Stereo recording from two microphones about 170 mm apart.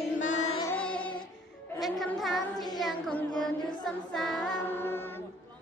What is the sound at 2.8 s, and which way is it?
Child singing, centre (ahead or behind).